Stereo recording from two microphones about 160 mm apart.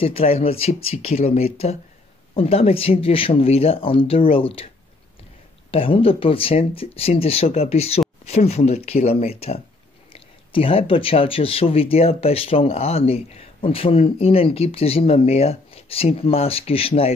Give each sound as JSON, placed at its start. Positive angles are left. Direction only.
{"t": 0.0, "sound": "speech", "side_deg": 40}
{"t": 5.7, "sound": "speech", "side_deg": 35}